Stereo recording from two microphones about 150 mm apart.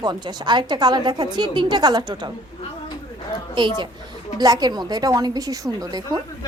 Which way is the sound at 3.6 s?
30° right (ahead or behind).